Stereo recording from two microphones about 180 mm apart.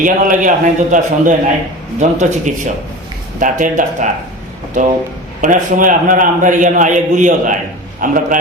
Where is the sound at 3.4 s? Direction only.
45° right (ahead or behind).